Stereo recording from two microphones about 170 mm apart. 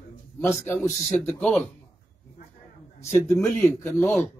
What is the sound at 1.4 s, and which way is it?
Speech, 5° left (ahead or behind).